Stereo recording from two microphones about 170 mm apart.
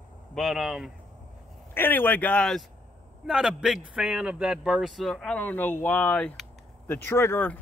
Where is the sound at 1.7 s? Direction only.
10° left (ahead or behind).